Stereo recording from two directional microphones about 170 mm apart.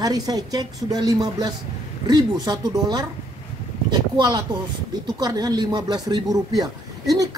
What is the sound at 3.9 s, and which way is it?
Speech, 25° right (ahead or behind).